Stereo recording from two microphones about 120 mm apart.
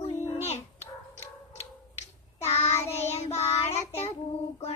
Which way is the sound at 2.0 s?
60° left (ahead or behind).